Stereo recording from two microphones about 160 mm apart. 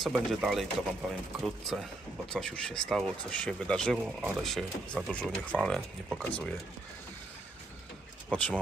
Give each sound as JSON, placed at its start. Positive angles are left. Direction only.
{"t": 0.0, "sound": "speech", "side_deg": -5}
{"t": 8.3, "sound": "speech", "side_deg": 10}